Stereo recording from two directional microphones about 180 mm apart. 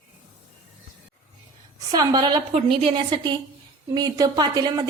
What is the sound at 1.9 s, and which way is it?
A woman's voice, 20° right (ahead or behind).